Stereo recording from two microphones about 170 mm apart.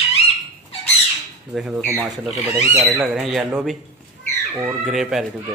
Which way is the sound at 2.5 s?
15° right (ahead or behind).